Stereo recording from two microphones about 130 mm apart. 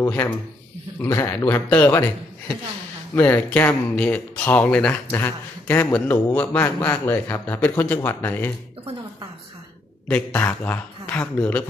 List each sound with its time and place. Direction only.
0.0 s speech: 20° left (ahead or behind)
3.2 s speech: 15° left (ahead or behind)
10.0 s speech: 15° left (ahead or behind)